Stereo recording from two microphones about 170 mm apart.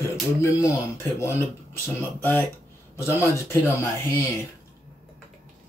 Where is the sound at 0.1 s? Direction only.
15° left (ahead or behind).